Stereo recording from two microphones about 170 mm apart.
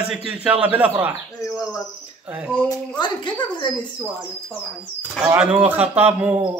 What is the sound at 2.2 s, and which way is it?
Speech, 10° right (ahead or behind).